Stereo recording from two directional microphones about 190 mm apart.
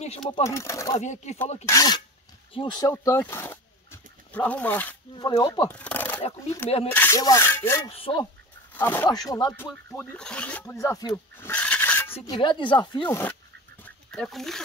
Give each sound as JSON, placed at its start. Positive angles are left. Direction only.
{"t": 0.4, "sound": "speech", "side_deg": 15}
{"t": 0.9, "sound": "speech", "side_deg": 40}
{"t": 1.7, "sound": "speech", "side_deg": 20}
{"t": 5.1, "sound": "speech", "side_deg": 20}
{"t": 5.7, "sound": "speech", "side_deg": 5}
{"t": 7.9, "sound": "speech", "side_deg": 30}
{"t": 8.7, "sound": "speech", "side_deg": 10}
{"t": 9.1, "sound": "speech", "side_deg": 20}
{"t": 9.8, "sound": "speech", "side_deg": 10}
{"t": 12.1, "sound": "speech", "side_deg": 30}
{"t": 13.1, "sound": "speech", "side_deg": 10}
{"t": 13.8, "sound": "duck", "side_deg": 5}